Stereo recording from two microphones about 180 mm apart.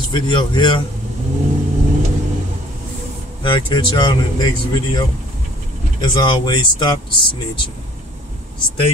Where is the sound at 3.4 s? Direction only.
25° left (ahead or behind).